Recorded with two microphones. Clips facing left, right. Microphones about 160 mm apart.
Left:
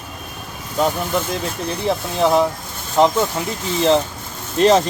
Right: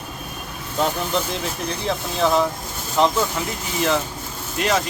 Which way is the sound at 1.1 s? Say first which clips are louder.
Left 2 dB; 15° left (ahead or behind).